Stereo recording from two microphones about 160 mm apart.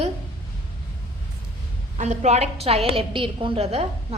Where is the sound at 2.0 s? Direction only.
45° right (ahead or behind).